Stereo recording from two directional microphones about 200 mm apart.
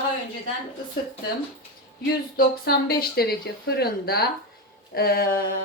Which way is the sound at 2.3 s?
50° left (ahead or behind).